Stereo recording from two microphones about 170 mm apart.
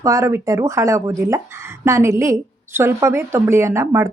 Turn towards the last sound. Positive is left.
turn(degrees=-15)  # may be behind; listen again after turning